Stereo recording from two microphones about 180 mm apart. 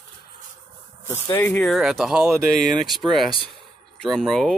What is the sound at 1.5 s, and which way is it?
Speech, 5° left (ahead or behind).